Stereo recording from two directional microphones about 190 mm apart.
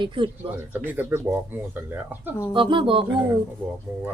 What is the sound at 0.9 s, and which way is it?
Speech, 10° right (ahead or behind).